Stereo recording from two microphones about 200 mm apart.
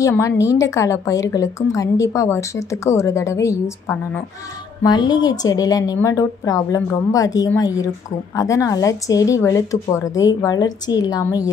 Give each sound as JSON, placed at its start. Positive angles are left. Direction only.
{"t": 0.0, "sound": "a woman's voice", "side_deg": 15}